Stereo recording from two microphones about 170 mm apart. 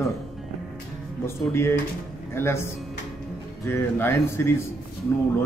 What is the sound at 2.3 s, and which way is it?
Speech, 15° left (ahead or behind).